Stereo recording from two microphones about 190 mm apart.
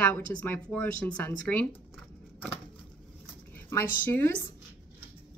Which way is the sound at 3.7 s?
10° left (ahead or behind).